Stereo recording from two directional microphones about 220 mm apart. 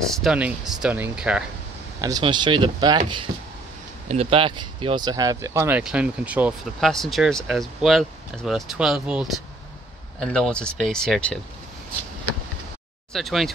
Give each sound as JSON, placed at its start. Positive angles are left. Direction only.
{"t": 0.1, "sound": "speech", "side_deg": 0}
{"t": 2.0, "sound": "speech", "side_deg": -15}
{"t": 4.1, "sound": "speech", "side_deg": -25}
{"t": 13.1, "sound": "speech", "side_deg": 0}